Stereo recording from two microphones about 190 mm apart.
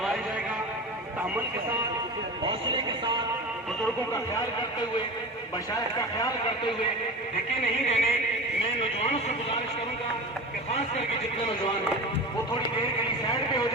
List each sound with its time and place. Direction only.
2.4 s speech: 25° right (ahead or behind)
5.7 s speech: 20° left (ahead or behind)
7.6 s a sound: 35° left (ahead or behind)
12.8 s speech: 20° left (ahead or behind)